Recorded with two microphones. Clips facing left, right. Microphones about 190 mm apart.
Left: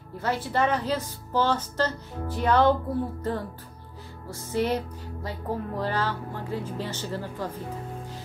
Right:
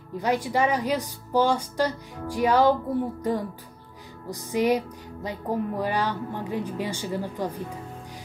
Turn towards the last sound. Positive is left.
turn(degrees=-15)  # may be behind; listen again after turning